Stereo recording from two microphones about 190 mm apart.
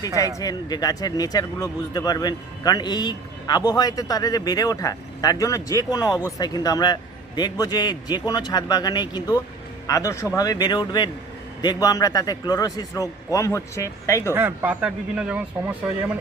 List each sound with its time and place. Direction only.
0.3 s speech: 20° left (ahead or behind)
14.3 s speech: 10° right (ahead or behind)